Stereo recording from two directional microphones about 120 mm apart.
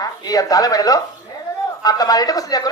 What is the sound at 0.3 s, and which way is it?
Speech, 30° left (ahead or behind).